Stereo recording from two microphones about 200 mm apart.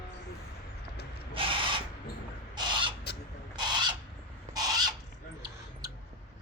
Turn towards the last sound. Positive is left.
turn(degrees=-20)  # may be behind; listen again after turning